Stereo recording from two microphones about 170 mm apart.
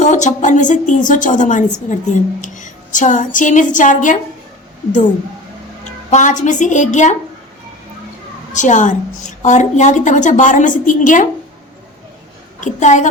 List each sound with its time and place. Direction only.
0.0 s a woman's voice: 45° left (ahead or behind)
6.1 s a woman's voice: 45° left (ahead or behind)
8.5 s a woman's voice: 45° left (ahead or behind)
12.5 s a woman's voice: 45° left (ahead or behind)